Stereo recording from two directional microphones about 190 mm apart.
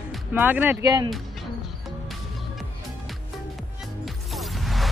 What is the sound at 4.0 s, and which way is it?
Music, centre (ahead or behind).